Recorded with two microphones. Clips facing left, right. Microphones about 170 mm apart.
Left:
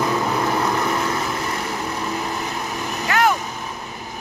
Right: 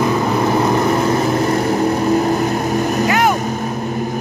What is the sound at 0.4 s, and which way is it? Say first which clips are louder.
Vehicle: right 6 dB; 25° right (ahead or behind).